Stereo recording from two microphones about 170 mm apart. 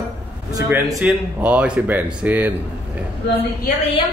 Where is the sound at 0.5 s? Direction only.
20° right (ahead or behind).